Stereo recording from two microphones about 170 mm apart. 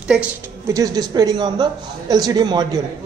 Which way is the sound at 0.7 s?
20° right (ahead or behind).